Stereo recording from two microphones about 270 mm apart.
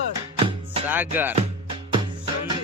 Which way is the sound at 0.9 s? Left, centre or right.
Centre.